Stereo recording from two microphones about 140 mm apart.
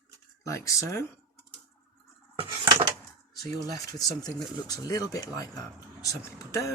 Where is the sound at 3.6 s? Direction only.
25° left (ahead or behind).